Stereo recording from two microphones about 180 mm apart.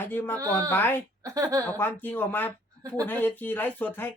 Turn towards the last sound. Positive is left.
turn(degrees=10)  # may be behind; listen again after turning